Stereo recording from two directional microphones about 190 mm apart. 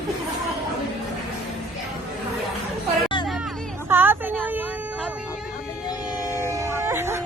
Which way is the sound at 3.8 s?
10° right (ahead or behind).